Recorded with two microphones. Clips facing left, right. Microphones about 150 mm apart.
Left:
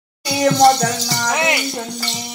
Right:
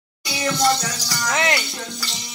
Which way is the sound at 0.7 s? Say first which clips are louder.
Left 7 dB; 60° left (ahead or behind).